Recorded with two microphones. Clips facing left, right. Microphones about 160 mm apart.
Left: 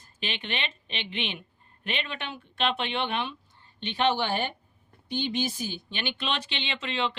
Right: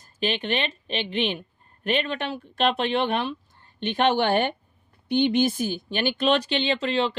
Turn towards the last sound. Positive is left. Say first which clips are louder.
# right 7 dB
turn(degrees=-40)  # may be behind; listen again after turning